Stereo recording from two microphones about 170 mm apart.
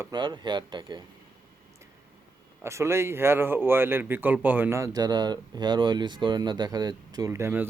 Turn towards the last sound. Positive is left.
turn(degrees=-15)  # may be behind; listen again after turning